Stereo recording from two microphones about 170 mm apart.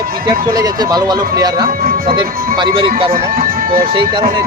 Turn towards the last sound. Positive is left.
turn(degrees=-30)  # may be behind; listen again after turning